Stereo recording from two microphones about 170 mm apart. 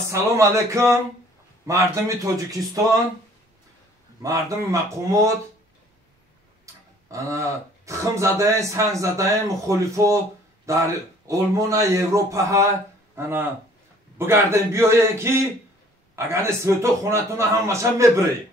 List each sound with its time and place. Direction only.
0.1 s a man's voice: 15° right (ahead or behind)
4.2 s speech: 20° right (ahead or behind)
6.6 s a man's voice: 20° right (ahead or behind)